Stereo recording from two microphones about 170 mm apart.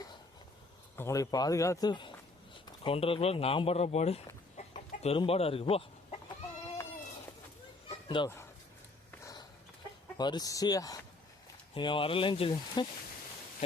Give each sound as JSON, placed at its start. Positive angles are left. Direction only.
{"t": 0.9, "sound": "speech", "side_deg": 20}
{"t": 4.5, "sound": "chicken", "side_deg": 40}
{"t": 8.0, "sound": "speech", "side_deg": 25}
{"t": 9.2, "sound": "a sound", "side_deg": 25}
{"t": 10.2, "sound": "speech", "side_deg": 25}